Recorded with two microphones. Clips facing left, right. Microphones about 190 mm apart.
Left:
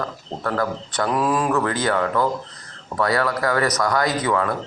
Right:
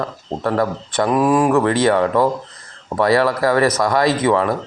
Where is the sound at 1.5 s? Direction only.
30° right (ahead or behind).